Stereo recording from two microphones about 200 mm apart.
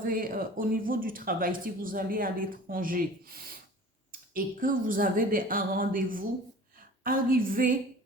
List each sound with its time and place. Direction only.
0.0 s speech: 45° right (ahead or behind)